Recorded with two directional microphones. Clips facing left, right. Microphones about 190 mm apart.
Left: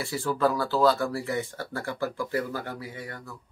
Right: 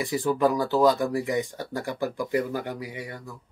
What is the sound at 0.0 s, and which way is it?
Speech, 15° right (ahead or behind).